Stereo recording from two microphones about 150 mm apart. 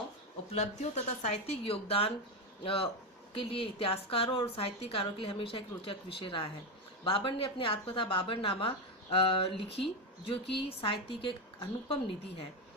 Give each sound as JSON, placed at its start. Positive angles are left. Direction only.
{"t": 0.5, "sound": "speech", "side_deg": 45}